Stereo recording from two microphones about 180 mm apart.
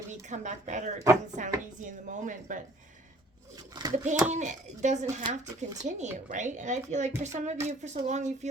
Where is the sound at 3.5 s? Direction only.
20° right (ahead or behind).